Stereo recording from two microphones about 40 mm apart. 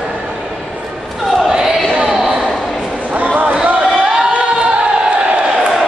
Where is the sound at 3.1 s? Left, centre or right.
Right.